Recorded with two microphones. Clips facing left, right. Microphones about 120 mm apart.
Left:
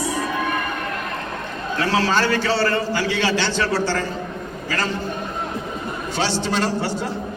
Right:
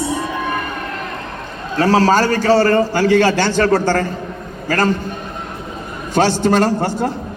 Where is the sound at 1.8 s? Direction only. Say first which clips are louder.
Right 7 dB; 40° right (ahead or behind).